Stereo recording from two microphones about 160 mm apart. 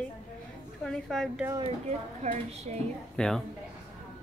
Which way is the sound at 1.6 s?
45° right (ahead or behind).